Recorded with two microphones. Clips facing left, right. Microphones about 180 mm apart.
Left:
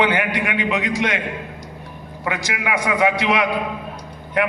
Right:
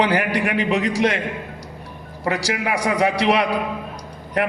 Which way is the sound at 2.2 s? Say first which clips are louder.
Right 3 dB; 35° right (ahead or behind).